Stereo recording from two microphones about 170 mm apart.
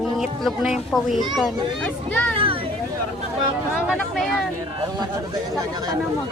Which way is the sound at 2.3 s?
30° right (ahead or behind).